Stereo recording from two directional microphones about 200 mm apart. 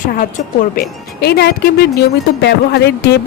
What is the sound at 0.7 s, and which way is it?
A woman's voice, 50° left (ahead or behind).